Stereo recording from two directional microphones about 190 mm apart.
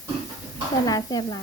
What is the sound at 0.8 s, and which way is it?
Speech, 20° left (ahead or behind).